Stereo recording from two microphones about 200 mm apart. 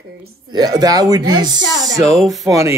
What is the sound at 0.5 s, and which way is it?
Speech, 20° right (ahead or behind).